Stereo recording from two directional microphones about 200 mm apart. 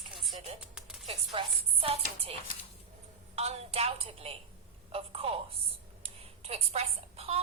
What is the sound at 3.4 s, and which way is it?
A woman's voice, 30° right (ahead or behind).